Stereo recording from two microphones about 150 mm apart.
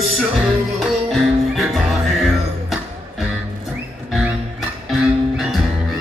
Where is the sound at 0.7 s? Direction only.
Centre (ahead or behind).